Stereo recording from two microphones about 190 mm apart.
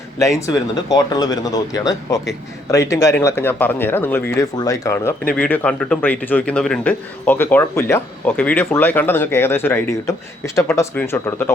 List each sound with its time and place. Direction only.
0.2 s a man's voice: 15° left (ahead or behind)